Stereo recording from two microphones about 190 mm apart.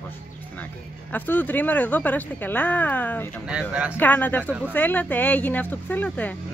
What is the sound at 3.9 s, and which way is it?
Speech, 10° left (ahead or behind).